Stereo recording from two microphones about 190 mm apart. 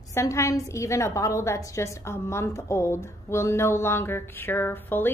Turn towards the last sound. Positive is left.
turn(degrees=10)  # may be behind; listen again after turning